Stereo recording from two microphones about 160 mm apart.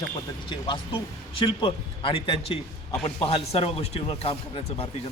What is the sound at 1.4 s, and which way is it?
Speech, 30° left (ahead or behind).